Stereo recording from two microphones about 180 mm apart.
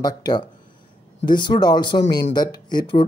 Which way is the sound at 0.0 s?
25° left (ahead or behind).